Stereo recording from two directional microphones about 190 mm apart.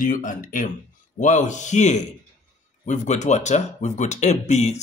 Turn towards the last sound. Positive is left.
turn(degrees=35)  # may be behind; listen again after turning